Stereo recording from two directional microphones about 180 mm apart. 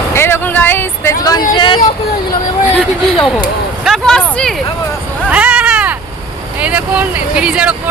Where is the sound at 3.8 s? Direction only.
Centre (ahead or behind).